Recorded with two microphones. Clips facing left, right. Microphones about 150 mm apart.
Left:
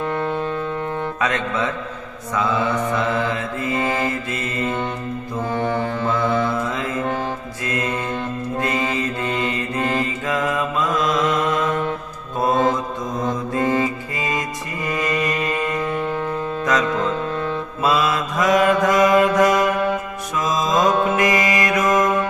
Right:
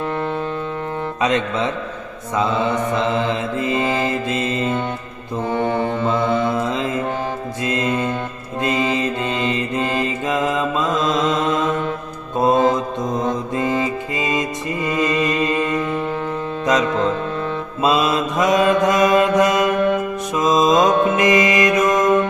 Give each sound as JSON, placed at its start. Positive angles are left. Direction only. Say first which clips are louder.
{"t": 1.2, "sound": "mantra", "louder": "right 4 dB", "side_deg": -20}
{"t": 5.5, "sound": "music", "louder": "right 3 dB", "side_deg": -20}
{"t": 7.6, "sound": "mantra", "louder": "right 4 dB", "side_deg": -20}
{"t": 13.5, "sound": "music", "louder": "even", "side_deg": -20}
{"t": 15.9, "sound": "music", "louder": "right 1 dB", "side_deg": 0}
{"t": 16.6, "sound": "music", "louder": "right 3 dB", "side_deg": -25}
{"t": 17.8, "sound": "mantra", "louder": "right 2 dB", "side_deg": -20}